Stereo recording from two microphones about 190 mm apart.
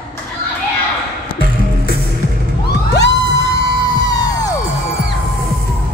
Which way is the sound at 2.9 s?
65° left (ahead or behind).